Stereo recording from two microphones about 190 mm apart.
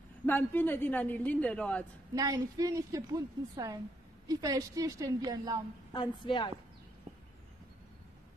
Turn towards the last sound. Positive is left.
turn(degrees=25)  # may be behind; listen again after turning